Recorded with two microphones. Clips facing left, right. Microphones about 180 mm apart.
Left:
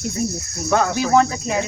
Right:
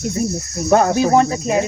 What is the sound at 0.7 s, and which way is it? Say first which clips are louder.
Cricket: right 5 dB; 35° right (ahead or behind).